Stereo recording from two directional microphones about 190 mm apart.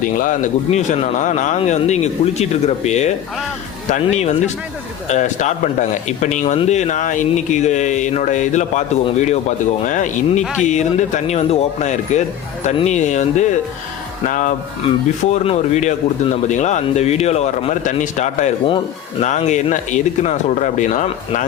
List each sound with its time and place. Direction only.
0.0 s a man's voice: 45° left (ahead or behind)